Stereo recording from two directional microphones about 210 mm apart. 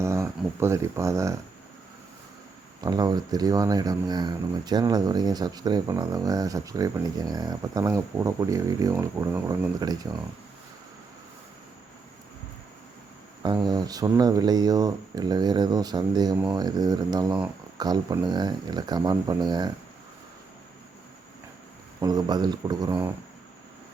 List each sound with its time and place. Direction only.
0.0 s speech: 15° right (ahead or behind)
2.8 s speech: 20° right (ahead or behind)
13.7 s speech: 20° right (ahead or behind)
22.0 s speech: 20° right (ahead or behind)